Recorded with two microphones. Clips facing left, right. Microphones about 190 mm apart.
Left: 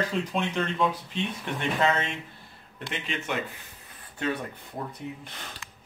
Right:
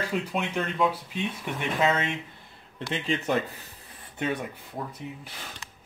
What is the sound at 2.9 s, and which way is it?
Speech, 35° right (ahead or behind).